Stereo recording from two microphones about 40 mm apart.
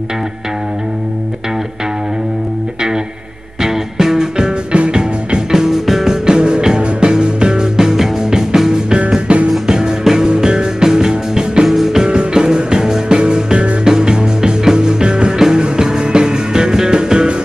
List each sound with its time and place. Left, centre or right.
3.6 s music: centre
4.7 s music: right
5.5 s music: centre
6.2 s music: right
9.3 s music: right
9.7 s music: centre
11.6 s music: centre
12.0 s music: right